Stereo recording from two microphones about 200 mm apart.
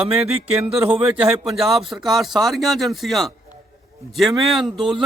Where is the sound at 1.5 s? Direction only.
Centre (ahead or behind).